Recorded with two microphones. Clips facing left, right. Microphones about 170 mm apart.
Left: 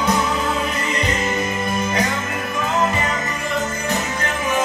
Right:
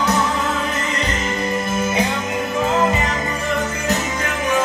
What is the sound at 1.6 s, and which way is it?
Music, 5° right (ahead or behind).